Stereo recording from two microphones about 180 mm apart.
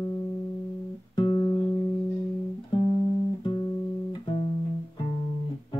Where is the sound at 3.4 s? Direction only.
25° left (ahead or behind).